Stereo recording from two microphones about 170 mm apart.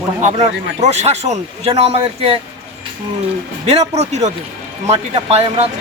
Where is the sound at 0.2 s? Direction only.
45° right (ahead or behind).